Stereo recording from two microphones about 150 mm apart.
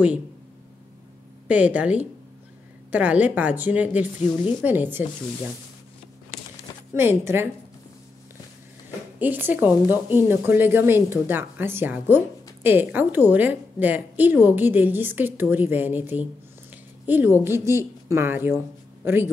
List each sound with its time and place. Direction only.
1.5 s a woman's voice: 10° right (ahead or behind)
6.3 s a sound: 40° left (ahead or behind)
6.9 s a woman's voice: 15° right (ahead or behind)
9.2 s a woman's voice: 10° right (ahead or behind)